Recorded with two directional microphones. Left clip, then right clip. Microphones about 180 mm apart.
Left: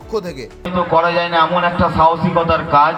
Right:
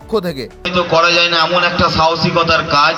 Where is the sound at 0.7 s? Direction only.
Centre (ahead or behind).